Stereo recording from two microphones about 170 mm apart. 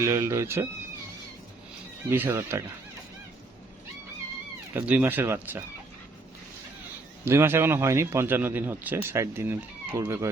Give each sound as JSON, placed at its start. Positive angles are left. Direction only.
{"t": 0.0, "sound": "speech", "side_deg": -15}
{"t": 2.0, "sound": "speech", "side_deg": -10}
{"t": 4.7, "sound": "speech", "side_deg": -10}
{"t": 7.3, "sound": "speech", "side_deg": -15}